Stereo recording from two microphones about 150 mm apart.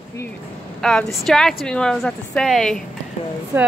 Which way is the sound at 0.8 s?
5° left (ahead or behind).